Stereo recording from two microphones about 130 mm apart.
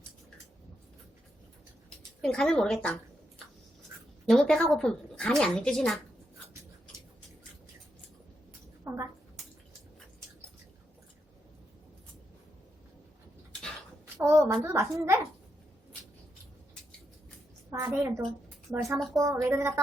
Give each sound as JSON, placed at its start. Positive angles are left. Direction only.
{"t": 2.2, "sound": "a woman's voice", "side_deg": 5}
{"t": 8.8, "sound": "a sound", "side_deg": -20}
{"t": 14.2, "sound": "a woman's voice", "side_deg": -25}
{"t": 17.7, "sound": "a woman's voice", "side_deg": -20}